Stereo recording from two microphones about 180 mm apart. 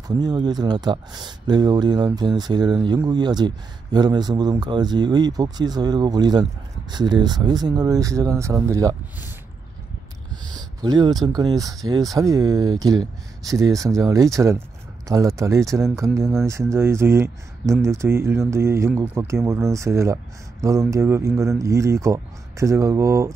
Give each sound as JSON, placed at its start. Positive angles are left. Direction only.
{"t": 0.2, "sound": "speech", "side_deg": -25}
{"t": 10.3, "sound": "speech", "side_deg": -20}